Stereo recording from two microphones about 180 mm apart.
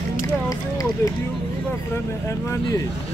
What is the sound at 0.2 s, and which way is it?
Speech, 20° left (ahead or behind).